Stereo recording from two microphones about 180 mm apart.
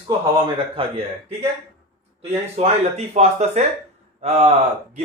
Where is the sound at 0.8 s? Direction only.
30° right (ahead or behind).